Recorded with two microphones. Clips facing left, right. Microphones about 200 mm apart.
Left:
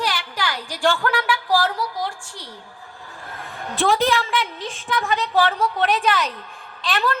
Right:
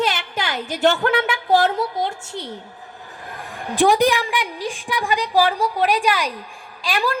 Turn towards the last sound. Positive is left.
turn(degrees=-10)  # may be behind; listen again after turning